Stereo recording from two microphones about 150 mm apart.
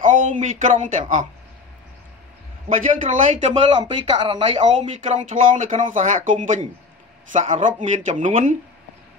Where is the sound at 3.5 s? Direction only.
35° right (ahead or behind).